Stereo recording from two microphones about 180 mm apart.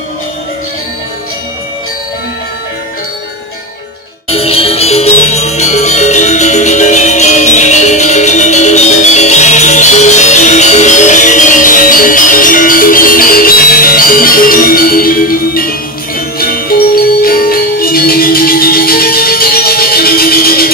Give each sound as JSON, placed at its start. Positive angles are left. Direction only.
{"t": 4.3, "sound": "music", "side_deg": 35}